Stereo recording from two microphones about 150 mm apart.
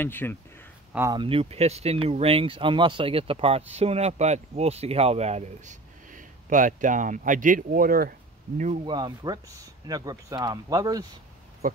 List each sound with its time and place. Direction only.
0.0 s speech: 15° left (ahead or behind)
1.1 s speech: 35° right (ahead or behind); by 8.1 s 75° right (ahead or behind)
8.8 s speech: 30° right (ahead or behind)
11.6 s a sound: 70° right (ahead or behind)